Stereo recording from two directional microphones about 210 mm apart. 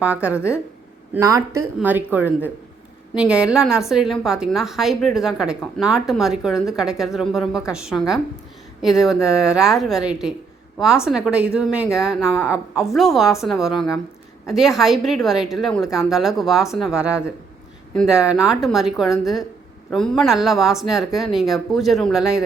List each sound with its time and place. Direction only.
0.0 s a woman's voice: 5° right (ahead or behind)